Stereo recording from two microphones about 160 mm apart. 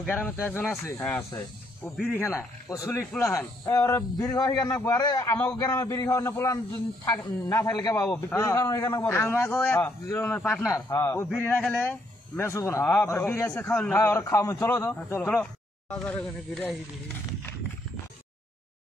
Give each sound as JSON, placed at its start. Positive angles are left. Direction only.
{"t": 0.0, "sound": "a man's voice", "side_deg": 10}
{"t": 10.7, "sound": "a man's voice", "side_deg": 20}